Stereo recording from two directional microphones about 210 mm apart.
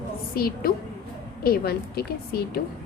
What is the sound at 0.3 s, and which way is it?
Speech, 45° left (ahead or behind).